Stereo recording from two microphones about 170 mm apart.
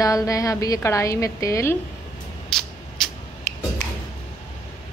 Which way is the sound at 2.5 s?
5° left (ahead or behind).